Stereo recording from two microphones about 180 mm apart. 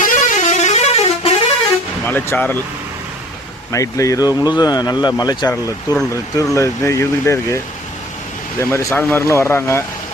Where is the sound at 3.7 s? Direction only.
15° left (ahead or behind).